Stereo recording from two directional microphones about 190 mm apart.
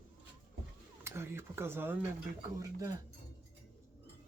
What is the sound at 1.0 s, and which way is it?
Speech, 15° right (ahead or behind).